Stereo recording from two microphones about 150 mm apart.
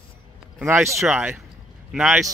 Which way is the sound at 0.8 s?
5° right (ahead or behind).